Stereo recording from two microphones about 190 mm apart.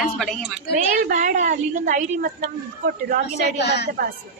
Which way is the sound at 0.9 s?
45° right (ahead or behind).